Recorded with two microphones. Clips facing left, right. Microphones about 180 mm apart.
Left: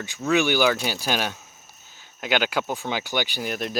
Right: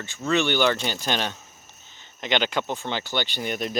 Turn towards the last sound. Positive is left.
turn(degrees=0)  # may be behind; listen again after turning